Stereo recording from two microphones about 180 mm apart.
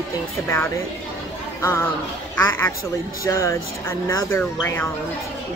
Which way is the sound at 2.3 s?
15° left (ahead or behind).